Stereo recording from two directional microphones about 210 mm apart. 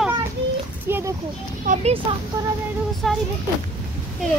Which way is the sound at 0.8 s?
10° right (ahead or behind).